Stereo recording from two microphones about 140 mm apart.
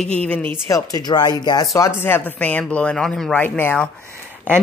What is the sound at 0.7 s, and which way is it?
Speech, 25° left (ahead or behind).